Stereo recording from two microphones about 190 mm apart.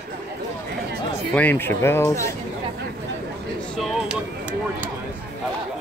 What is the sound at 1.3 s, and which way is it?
Speech, 10° left (ahead or behind).